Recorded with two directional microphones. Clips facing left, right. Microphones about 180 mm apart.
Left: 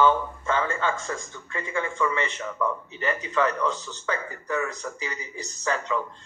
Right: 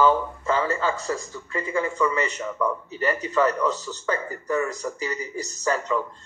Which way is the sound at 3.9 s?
40° right (ahead or behind).